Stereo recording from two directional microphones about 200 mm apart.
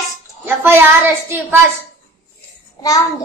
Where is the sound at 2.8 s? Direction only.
15° left (ahead or behind).